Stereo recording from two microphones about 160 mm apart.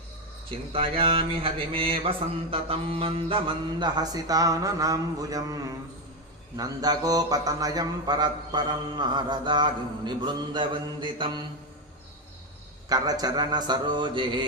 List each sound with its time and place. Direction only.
0.7 s a sound: 35° right (ahead or behind)
6.6 s speech: 25° right (ahead or behind)
12.9 s speech: 25° right (ahead or behind)